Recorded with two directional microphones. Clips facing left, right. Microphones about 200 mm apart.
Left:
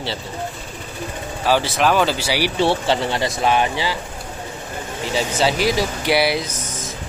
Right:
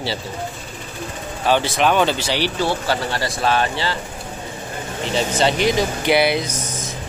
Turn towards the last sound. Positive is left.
turn(degrees=0)  # may be behind; listen again after turning